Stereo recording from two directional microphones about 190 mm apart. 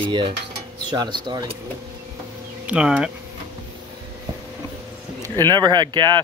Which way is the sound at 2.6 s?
5° right (ahead or behind).